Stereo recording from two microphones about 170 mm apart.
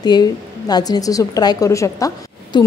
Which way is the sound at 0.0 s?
25° left (ahead or behind).